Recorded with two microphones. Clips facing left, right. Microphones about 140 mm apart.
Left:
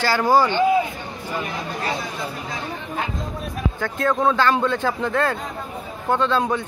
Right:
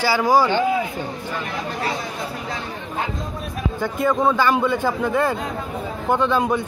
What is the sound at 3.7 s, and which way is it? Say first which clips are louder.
A man's voice: right 2 dB; 10° right (ahead or behind).